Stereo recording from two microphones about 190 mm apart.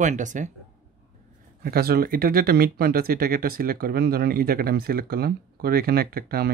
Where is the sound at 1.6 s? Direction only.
55° right (ahead or behind).